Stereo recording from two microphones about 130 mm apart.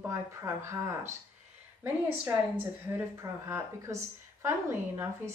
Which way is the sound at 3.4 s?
20° right (ahead or behind).